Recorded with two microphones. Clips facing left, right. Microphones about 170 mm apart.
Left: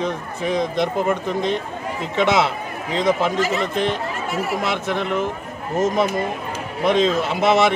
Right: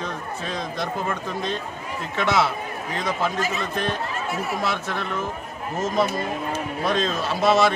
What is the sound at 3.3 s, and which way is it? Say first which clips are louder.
Speech: left 5 dB; 85° left.